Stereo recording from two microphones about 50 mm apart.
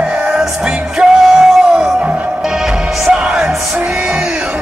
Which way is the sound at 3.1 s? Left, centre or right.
Centre.